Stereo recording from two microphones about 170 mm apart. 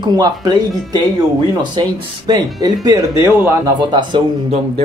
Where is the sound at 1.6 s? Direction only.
25° right (ahead or behind).